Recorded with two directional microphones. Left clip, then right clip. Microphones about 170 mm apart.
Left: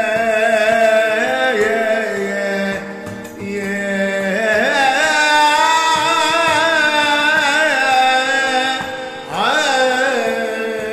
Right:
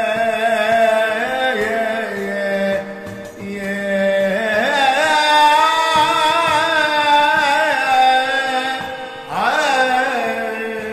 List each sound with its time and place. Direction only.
0.0 s a sound: 20° left (ahead or behind)
3.9 s carnatic music: 20° left (ahead or behind)
9.4 s music: 20° left (ahead or behind)